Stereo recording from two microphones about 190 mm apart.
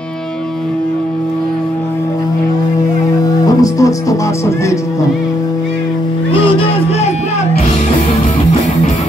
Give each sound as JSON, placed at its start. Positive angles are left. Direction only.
{"t": 3.4, "sound": "music", "side_deg": 15}
{"t": 6.3, "sound": "music", "side_deg": 30}